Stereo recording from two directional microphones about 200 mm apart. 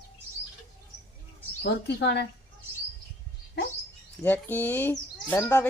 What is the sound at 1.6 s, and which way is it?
Speech, 55° left (ahead or behind).